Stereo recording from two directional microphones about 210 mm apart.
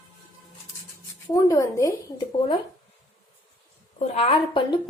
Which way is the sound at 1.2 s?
15° left (ahead or behind).